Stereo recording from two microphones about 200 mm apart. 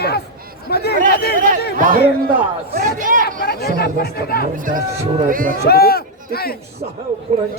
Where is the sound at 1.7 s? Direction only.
40° right (ahead or behind).